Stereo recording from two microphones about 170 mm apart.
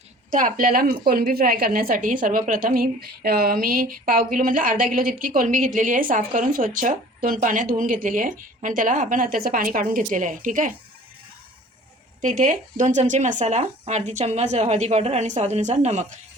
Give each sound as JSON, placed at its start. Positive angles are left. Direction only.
{"t": 0.3, "sound": "a woman's voice", "side_deg": -50}
{"t": 12.2, "sound": "speech", "side_deg": -50}